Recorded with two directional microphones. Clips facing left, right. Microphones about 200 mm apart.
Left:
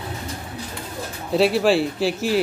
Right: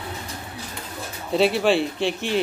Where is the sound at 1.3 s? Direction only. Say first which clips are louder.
Left 2 dB; centre (ahead or behind).